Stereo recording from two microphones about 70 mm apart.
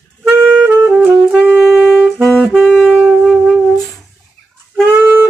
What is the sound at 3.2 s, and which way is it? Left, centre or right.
Music, centre.